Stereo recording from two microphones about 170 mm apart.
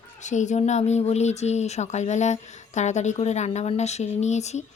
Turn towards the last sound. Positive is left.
turn(degrees=40)  # may be behind; listen again after turning